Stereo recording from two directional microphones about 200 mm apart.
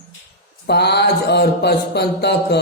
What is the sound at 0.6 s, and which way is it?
Mantra, 55° left (ahead or behind).